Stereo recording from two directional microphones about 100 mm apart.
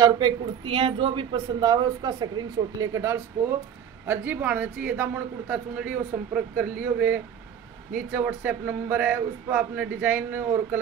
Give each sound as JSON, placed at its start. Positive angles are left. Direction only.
{"t": 0.7, "sound": "a man's voice", "side_deg": -65}